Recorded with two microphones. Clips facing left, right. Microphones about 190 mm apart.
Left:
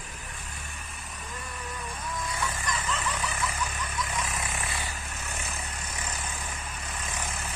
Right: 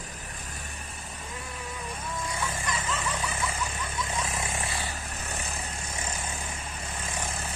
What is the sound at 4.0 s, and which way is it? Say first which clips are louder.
Vehicle: right 1 dB; 30° right (ahead or behind).